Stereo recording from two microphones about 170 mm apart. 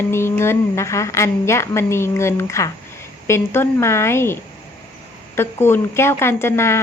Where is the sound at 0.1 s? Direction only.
15° left (ahead or behind).